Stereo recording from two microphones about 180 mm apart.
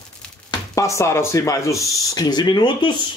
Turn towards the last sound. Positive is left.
turn(degrees=25)  # may be behind; listen again after turning